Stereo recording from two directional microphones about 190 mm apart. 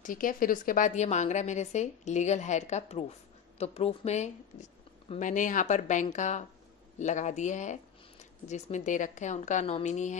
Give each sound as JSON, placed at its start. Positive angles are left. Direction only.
{"t": 0.0, "sound": "a woman's voice", "side_deg": 45}